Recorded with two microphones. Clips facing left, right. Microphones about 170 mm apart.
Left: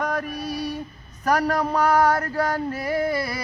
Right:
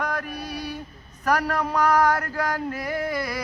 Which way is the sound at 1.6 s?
30° left (ahead or behind).